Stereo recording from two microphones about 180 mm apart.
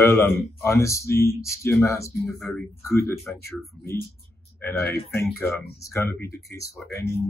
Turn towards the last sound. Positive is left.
turn(degrees=15)  # may be behind; listen again after turning